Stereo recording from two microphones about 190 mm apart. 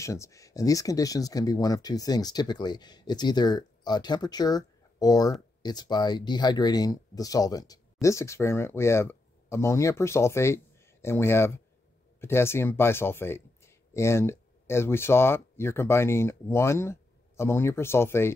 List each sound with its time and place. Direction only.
0.0 s speech: 15° left (ahead or behind)